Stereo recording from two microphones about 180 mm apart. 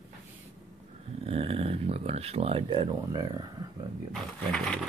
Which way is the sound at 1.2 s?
30° right (ahead or behind).